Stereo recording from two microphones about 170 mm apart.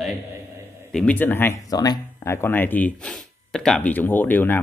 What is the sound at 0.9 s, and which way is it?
Speech, 5° left (ahead or behind).